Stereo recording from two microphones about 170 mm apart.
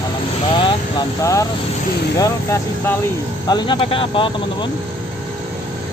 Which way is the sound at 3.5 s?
30° left (ahead or behind).